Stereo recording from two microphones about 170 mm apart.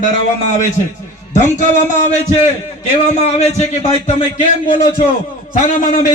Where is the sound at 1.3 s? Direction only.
45° left (ahead or behind).